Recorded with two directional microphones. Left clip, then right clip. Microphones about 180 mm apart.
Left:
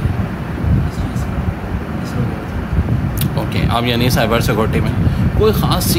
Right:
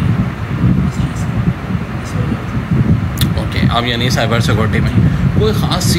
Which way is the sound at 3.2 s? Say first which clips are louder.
Right 1 dB; 15° left (ahead or behind).